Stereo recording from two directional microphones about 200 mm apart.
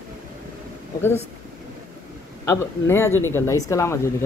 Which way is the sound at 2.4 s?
15° left (ahead or behind).